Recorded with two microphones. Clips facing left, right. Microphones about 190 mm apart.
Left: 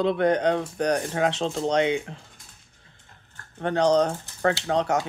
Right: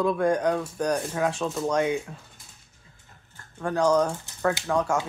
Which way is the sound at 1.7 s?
70° left (ahead or behind).